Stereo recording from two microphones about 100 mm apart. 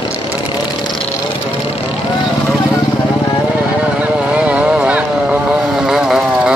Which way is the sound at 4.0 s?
15° right (ahead or behind).